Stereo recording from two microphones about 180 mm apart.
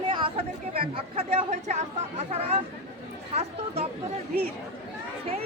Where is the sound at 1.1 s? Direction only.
40° right (ahead or behind).